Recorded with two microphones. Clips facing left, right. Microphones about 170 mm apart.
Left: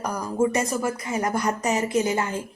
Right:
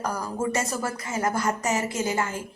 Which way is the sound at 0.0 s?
15° left (ahead or behind).